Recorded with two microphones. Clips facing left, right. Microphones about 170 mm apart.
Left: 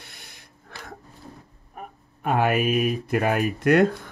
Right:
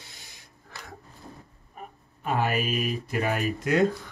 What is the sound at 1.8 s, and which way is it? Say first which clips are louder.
Speech: left 4 dB; 60° left (ahead or behind).